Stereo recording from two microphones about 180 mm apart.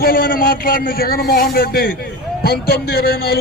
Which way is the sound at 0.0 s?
55° left (ahead or behind).